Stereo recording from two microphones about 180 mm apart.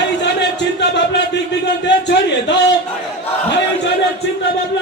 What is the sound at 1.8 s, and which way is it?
Speech, 75° left (ahead or behind).